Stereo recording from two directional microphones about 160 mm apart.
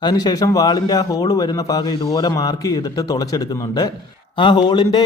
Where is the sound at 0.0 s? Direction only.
25° left (ahead or behind).